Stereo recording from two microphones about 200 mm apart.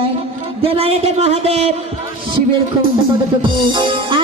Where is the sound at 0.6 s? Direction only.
30° right (ahead or behind).